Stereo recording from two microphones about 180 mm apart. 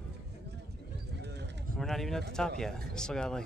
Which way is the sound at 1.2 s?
70° right (ahead or behind).